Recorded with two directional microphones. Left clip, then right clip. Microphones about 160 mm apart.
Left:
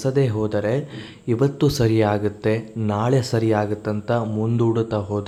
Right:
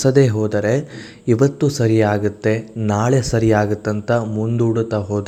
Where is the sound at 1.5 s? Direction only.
Centre (ahead or behind).